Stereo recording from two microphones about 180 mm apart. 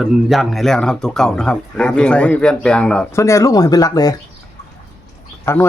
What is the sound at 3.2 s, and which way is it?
Speech, 15° left (ahead or behind).